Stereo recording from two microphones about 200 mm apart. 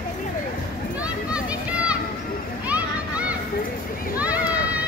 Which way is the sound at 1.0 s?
5° right (ahead or behind).